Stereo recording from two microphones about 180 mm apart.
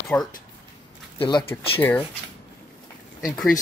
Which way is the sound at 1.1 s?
30° left (ahead or behind).